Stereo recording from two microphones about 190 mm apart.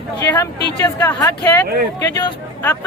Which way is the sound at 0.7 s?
15° left (ahead or behind).